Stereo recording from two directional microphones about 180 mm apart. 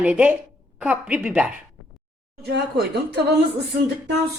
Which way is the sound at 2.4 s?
65° right (ahead or behind).